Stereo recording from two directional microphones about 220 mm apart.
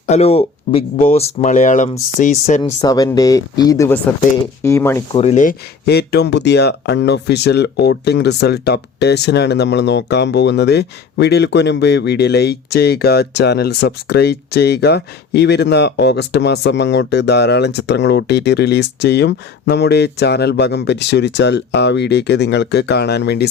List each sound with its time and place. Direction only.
0.1 s speech: 30° left (ahead or behind)
2.6 s speech: 15° left (ahead or behind)
5.1 s speech: 30° left (ahead or behind); by 23.5 s 50° left (ahead or behind)